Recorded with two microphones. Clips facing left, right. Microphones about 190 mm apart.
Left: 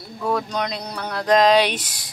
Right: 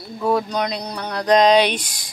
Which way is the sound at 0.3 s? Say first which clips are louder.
Right 3 dB; 5° right (ahead or behind).